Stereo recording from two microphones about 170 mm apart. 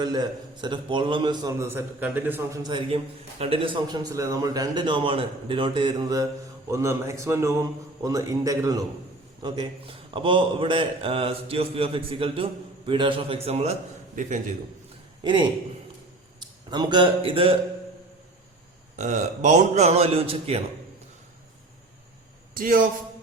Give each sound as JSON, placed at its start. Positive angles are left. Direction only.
{"t": 0.0, "sound": "a man's voice", "side_deg": -25}
{"t": 2.6, "sound": "a man's voice", "side_deg": -30}
{"t": 14.2, "sound": "a man's voice", "side_deg": -50}
{"t": 15.2, "sound": "a man's voice", "side_deg": -30}
{"t": 18.9, "sound": "a man's voice", "side_deg": -45}
{"t": 22.5, "sound": "a man's voice", "side_deg": -55}